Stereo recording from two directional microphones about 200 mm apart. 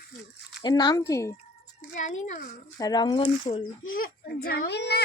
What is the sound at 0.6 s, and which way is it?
Speech, 20° left (ahead or behind).